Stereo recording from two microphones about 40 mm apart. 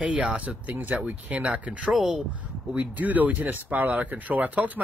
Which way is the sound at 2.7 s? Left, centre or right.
Right.